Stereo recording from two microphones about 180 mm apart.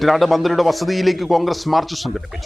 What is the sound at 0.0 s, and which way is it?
A man's voice, centre (ahead or behind).